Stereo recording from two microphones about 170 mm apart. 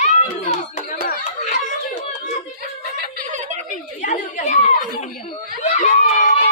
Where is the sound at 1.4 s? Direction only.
45° left (ahead or behind).